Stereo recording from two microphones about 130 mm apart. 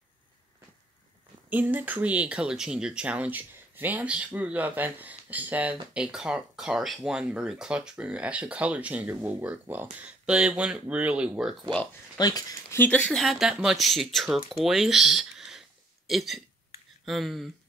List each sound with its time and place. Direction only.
1.5 s speech: 15° right (ahead or behind)
12.2 s speech: 30° left (ahead or behind)
12.7 s speech: 15° left (ahead or behind)